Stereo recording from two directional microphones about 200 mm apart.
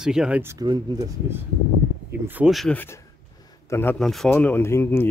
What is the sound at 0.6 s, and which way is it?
Speech, 20° right (ahead or behind).